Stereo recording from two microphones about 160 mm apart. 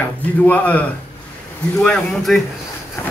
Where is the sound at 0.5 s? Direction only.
10° left (ahead or behind).